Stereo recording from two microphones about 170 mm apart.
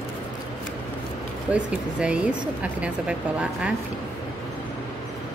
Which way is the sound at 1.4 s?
5° right (ahead or behind).